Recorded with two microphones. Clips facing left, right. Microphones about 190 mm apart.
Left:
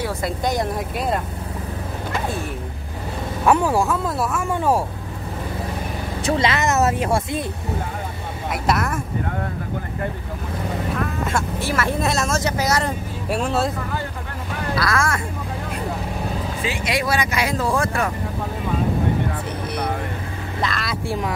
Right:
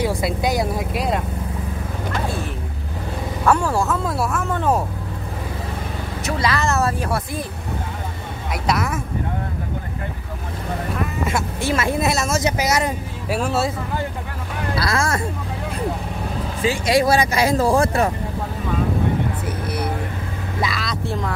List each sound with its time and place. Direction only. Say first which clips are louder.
0.0 s speech: right 3 dB; 10° right (ahead or behind)
3.4 s speech: left 1 dB; 15° left (ahead or behind)
6.2 s speech: left 2 dB; 25° left (ahead or behind)
8.6 s speech: even; centre (ahead or behind)
11.0 s vehicle: right 2 dB; 10° right (ahead or behind)
11.6 s speech: right 4 dB; 25° right (ahead or behind)
12.0 s speech: right 1 dB; 5° right (ahead or behind)
14.8 s speech: right 1 dB; 30° right (ahead or behind)
16.6 s speech: right 7 dB; 35° right (ahead or behind)
20.8 s speech: even; 10° left (ahead or behind)